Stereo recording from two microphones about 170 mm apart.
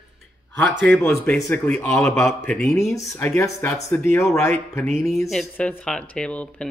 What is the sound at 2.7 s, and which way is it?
Speech, 15° left (ahead or behind).